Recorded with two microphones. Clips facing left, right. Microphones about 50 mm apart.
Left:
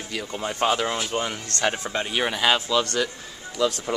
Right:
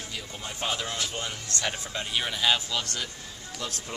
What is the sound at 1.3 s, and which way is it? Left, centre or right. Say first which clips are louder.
Speech: left 7 dB; left.